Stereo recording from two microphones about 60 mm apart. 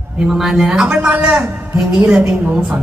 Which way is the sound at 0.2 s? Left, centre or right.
Centre.